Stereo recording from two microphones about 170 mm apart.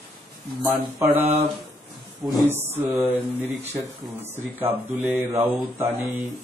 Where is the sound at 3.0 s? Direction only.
10° right (ahead or behind).